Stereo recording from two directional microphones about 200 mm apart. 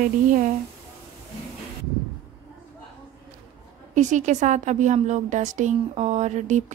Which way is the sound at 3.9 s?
40° right (ahead or behind).